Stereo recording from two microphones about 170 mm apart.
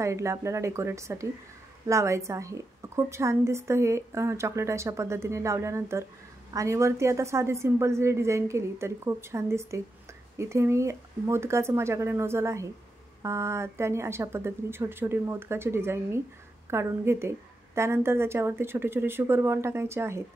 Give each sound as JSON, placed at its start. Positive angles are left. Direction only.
{"t": 0.0, "sound": "a woman's voice", "side_deg": -15}